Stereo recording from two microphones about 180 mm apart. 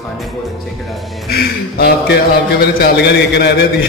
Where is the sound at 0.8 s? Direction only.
Centre (ahead or behind).